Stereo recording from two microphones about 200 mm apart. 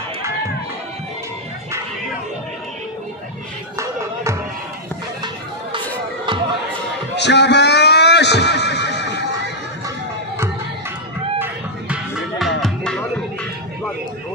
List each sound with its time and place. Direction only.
3.7 s a sound: 15° right (ahead or behind)
7.2 s neigh: 60° left (ahead or behind)
9.8 s music: 15° right (ahead or behind); by 13.5 s 5° left (ahead or behind)